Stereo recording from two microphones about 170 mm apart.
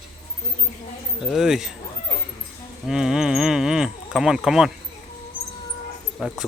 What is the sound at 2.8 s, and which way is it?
Speech, 5° right (ahead or behind).